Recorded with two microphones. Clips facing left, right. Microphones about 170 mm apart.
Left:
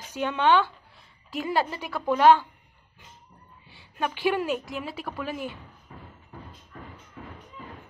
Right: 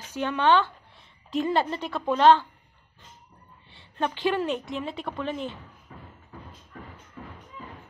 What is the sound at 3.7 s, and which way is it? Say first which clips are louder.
A woman's voice: right 1 dB; 5° left (ahead or behind).